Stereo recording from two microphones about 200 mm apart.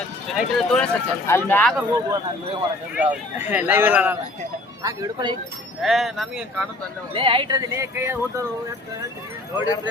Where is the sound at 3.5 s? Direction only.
10° right (ahead or behind).